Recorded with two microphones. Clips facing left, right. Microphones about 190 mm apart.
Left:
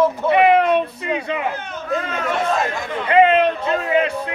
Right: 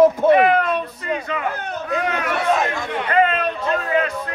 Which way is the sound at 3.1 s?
25° left (ahead or behind).